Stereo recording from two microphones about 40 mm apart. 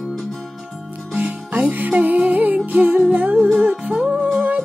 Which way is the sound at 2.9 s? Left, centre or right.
Right.